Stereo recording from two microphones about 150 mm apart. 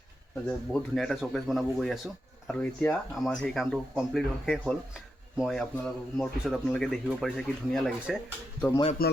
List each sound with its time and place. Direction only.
0.4 s speech: 5° left (ahead or behind)
9.0 s speech: 90° left